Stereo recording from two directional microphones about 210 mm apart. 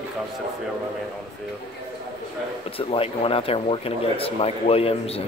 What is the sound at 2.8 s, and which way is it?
Speech, 25° left (ahead or behind).